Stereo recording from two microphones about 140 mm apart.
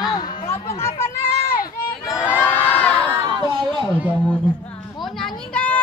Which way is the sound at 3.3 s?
35° right (ahead or behind).